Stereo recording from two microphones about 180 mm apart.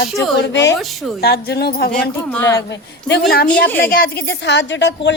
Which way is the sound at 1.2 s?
60° left (ahead or behind).